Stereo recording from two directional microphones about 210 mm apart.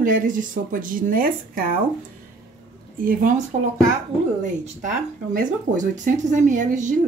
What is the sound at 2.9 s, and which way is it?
Speech, 40° right (ahead or behind).